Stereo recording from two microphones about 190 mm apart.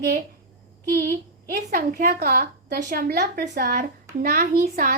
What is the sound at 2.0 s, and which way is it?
A woman's voice, 55° right (ahead or behind).